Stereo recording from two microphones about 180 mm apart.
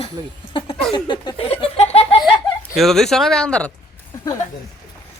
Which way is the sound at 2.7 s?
Centre (ahead or behind).